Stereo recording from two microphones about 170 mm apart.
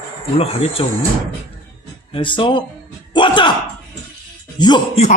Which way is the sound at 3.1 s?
25° left (ahead or behind).